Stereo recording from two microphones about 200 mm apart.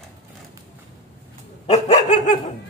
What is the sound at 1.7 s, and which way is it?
Dog, 35° left (ahead or behind).